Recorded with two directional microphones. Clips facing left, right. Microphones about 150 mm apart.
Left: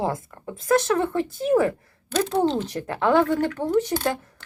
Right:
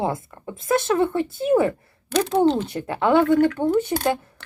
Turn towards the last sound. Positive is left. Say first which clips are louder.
# right 3 dB
turn(degrees=-70)  # may be behind; listen again after turning